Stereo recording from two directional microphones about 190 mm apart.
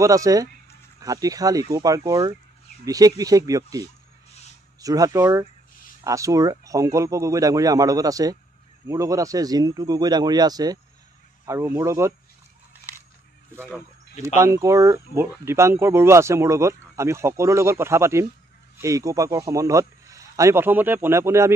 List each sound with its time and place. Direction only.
0.0 s speech: 15° right (ahead or behind)
13.6 s speech: 10° right (ahead or behind)